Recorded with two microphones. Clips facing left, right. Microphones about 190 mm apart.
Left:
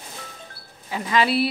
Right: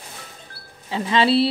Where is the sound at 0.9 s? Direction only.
25° right (ahead or behind).